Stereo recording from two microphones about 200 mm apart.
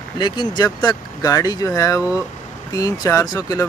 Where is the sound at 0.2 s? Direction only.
25° left (ahead or behind).